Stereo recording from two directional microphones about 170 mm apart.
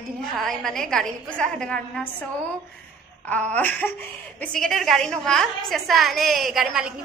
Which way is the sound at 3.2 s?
10° left (ahead or behind).